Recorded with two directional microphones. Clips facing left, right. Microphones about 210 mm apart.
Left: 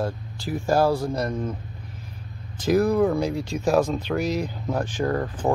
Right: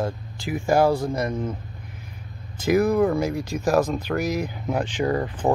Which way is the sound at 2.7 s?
Centre (ahead or behind).